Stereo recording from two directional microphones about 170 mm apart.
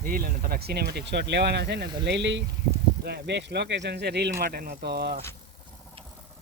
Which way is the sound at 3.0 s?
80° right.